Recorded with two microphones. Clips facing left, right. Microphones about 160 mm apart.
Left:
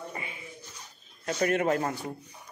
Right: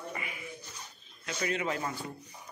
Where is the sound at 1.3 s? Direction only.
50° left (ahead or behind).